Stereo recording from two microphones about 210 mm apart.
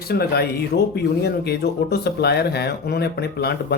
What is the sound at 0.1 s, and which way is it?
Speech, 50° left (ahead or behind).